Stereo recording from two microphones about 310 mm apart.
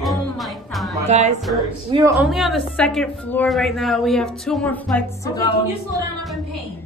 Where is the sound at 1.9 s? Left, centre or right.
Centre.